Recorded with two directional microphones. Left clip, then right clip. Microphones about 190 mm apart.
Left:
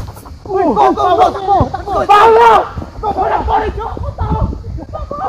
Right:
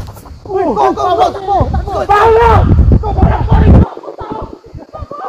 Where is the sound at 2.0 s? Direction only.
Centre (ahead or behind).